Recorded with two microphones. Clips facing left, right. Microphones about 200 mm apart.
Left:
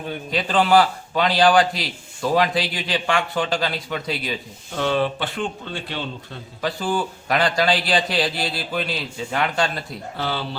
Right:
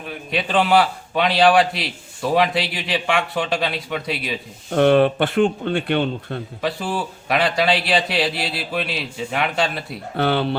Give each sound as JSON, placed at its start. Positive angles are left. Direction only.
{"t": 0.3, "sound": "a man's voice", "side_deg": 0}
{"t": 4.7, "sound": "speech", "side_deg": -60}
{"t": 6.6, "sound": "a man's voice", "side_deg": -5}
{"t": 10.2, "sound": "speech", "side_deg": -60}